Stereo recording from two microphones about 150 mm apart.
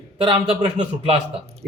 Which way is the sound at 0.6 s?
50° right (ahead or behind).